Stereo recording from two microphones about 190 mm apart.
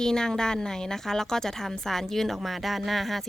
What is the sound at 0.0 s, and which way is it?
A woman's voice, 5° left (ahead or behind).